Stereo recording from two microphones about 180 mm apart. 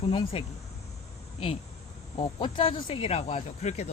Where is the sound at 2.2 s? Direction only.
25° left (ahead or behind).